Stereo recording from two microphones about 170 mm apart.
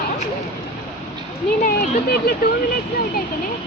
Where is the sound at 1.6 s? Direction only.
65° left (ahead or behind).